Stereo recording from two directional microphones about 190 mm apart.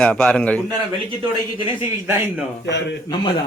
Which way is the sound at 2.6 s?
65° left (ahead or behind).